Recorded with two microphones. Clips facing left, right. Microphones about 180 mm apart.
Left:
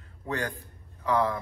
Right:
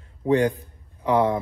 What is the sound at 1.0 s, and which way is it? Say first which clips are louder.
Speech: right 6 dB; 20° right (ahead or behind).